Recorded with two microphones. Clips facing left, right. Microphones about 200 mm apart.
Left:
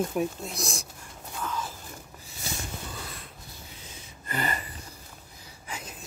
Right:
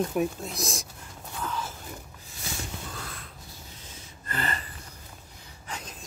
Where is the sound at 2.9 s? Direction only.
5° left (ahead or behind).